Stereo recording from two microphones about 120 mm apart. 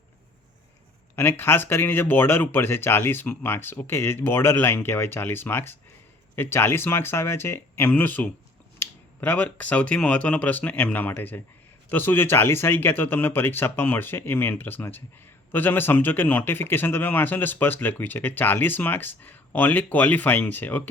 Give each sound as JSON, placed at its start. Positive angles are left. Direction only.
{"t": 1.1, "sound": "speech", "side_deg": 20}